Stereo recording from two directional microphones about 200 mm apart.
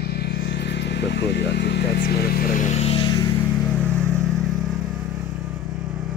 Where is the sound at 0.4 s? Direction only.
65° left (ahead or behind); by 3.3 s 25° left (ahead or behind).